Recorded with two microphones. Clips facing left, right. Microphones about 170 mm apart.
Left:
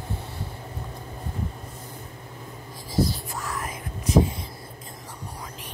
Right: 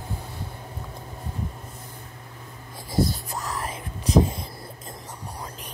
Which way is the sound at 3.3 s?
35° right (ahead or behind).